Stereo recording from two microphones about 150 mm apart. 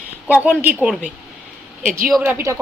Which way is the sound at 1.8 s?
65° right (ahead or behind).